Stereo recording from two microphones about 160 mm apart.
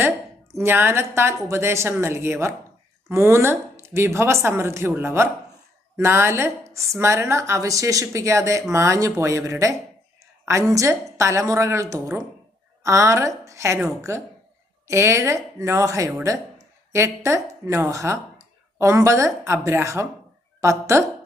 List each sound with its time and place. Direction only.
0.6 s a woman's voice: 15° right (ahead or behind)